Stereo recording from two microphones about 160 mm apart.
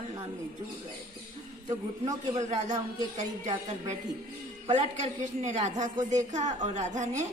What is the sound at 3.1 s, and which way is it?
A woman's voice, 50° right (ahead or behind).